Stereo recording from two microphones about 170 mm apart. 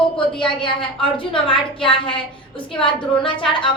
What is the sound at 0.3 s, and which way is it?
A woman's voice, 30° left (ahead or behind).